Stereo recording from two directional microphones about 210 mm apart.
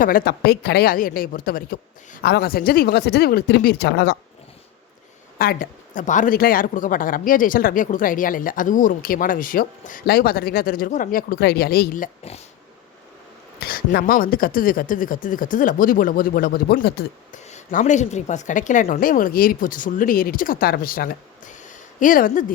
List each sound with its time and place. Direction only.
0.0 s speech: 45° left (ahead or behind)
5.4 s speech: 45° left (ahead or behind)
13.6 s speech: 45° left (ahead or behind)
17.3 s speech: 35° left (ahead or behind)